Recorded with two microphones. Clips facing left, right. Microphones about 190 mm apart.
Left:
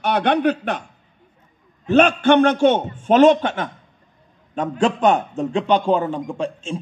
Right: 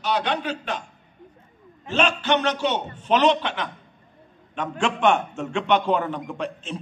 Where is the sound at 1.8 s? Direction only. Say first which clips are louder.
Left 8 dB; 55° left (ahead or behind); by 6.2 s 30° left (ahead or behind).